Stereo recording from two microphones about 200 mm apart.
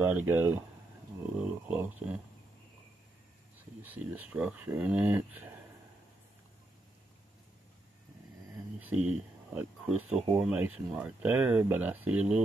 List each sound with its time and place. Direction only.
0.0 s speech: 10° right (ahead or behind)
3.5 s speech: 10° right (ahead or behind)
9.5 s speech: 10° right (ahead or behind)
10.0 s speech: 35° right (ahead or behind)
10.4 s speech: 10° right (ahead or behind)